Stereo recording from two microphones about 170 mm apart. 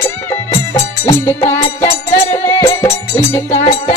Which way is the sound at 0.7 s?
15° left (ahead or behind).